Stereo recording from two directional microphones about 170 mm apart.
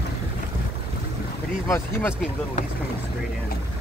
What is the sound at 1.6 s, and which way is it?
Speech, 15° left (ahead or behind).